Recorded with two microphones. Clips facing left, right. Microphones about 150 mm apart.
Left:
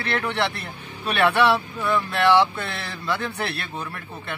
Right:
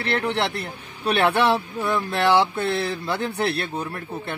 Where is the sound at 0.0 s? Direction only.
25° right (ahead or behind).